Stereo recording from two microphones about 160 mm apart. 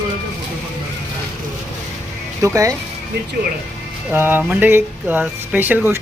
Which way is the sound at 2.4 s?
20° right (ahead or behind).